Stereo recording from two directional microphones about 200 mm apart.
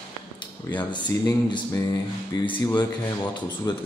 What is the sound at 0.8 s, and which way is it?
A man's voice, 20° left (ahead or behind).